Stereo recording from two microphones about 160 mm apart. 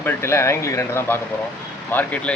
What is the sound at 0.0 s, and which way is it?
Speech, 15° left (ahead or behind).